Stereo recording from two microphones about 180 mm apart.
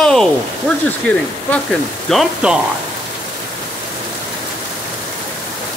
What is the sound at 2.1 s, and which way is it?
Speech, 5° right (ahead or behind).